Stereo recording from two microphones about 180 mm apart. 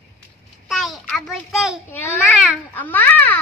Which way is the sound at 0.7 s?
Centre (ahead or behind).